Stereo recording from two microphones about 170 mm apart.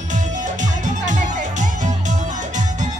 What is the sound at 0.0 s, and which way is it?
Music, 45° right (ahead or behind).